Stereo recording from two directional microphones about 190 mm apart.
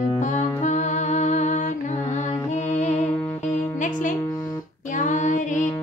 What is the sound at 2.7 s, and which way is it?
Music, 35° left (ahead or behind).